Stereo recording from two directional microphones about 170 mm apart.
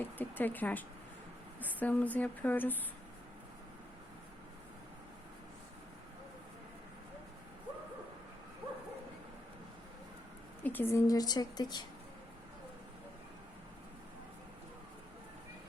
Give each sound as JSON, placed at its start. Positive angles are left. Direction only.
{"t": 0.0, "sound": "speech", "side_deg": 10}
{"t": 10.6, "sound": "a woman's voice", "side_deg": 10}